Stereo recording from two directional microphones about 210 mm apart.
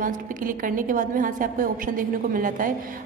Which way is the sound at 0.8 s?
40° right (ahead or behind).